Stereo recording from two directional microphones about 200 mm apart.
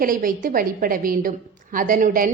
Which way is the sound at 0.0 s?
45° right (ahead or behind).